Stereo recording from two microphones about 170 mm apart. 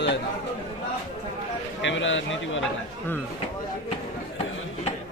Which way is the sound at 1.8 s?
90° left.